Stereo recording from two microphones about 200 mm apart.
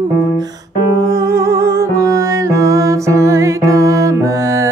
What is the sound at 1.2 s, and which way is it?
Music, 15° right (ahead or behind).